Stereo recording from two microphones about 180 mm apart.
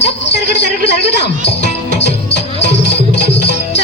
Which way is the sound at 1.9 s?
70° left (ahead or behind).